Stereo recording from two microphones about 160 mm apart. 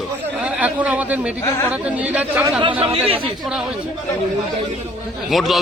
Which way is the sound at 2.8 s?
35° right (ahead or behind).